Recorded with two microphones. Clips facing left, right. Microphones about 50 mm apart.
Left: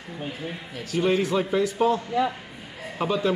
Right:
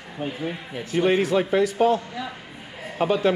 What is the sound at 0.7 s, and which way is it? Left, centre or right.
Speech, right.